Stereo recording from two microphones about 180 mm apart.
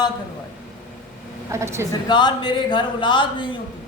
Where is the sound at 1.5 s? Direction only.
15° right (ahead or behind).